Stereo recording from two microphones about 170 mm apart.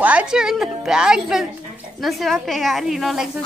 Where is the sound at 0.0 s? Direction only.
10° right (ahead or behind).